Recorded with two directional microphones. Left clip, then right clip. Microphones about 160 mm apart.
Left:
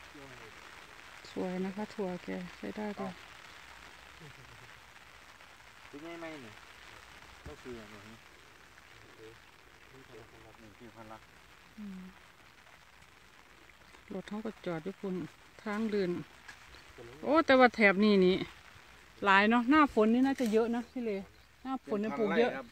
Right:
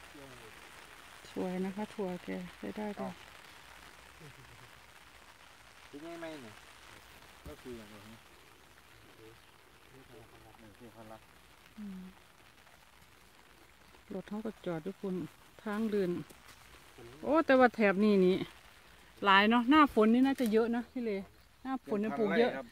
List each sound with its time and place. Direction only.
1.2 s speech: 5° right (ahead or behind)
14.1 s speech: centre (ahead or behind)
17.2 s speech: 5° left (ahead or behind); by 22.1 s 10° right (ahead or behind)
22.1 s speech: 55° right (ahead or behind)